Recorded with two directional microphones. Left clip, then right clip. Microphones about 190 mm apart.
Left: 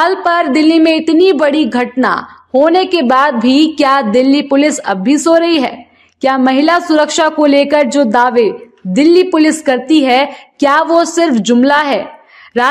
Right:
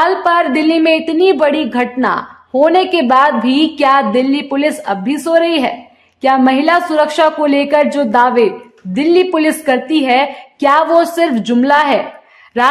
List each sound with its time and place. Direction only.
0.0 s a woman's voice: 20° left (ahead or behind)